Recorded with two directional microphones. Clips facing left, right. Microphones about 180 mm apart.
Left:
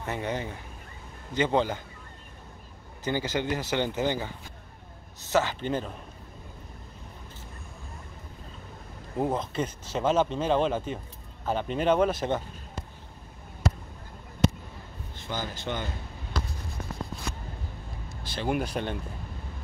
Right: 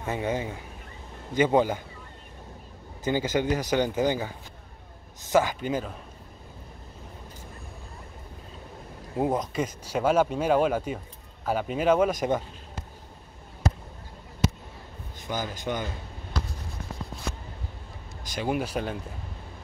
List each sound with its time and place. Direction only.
0.0 s speech: 15° right (ahead or behind)
3.0 s speech: 20° right (ahead or behind)
5.3 s speech: 15° right (ahead or behind)
9.1 s speech: 10° right (ahead or behind)
15.2 s speech: 15° right (ahead or behind)
18.3 s speech: 5° right (ahead or behind)